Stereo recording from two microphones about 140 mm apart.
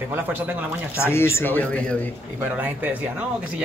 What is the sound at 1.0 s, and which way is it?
Speech, 15° left (ahead or behind).